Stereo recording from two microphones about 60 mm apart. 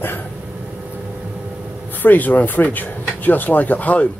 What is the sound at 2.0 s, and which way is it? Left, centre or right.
Speech, left.